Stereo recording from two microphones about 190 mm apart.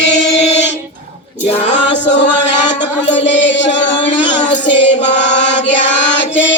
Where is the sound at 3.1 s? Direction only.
70° left (ahead or behind).